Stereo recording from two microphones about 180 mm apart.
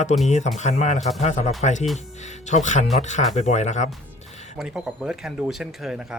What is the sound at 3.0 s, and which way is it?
Speech, 40° left (ahead or behind).